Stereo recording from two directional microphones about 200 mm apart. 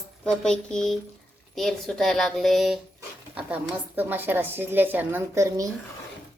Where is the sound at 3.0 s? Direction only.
5° right (ahead or behind).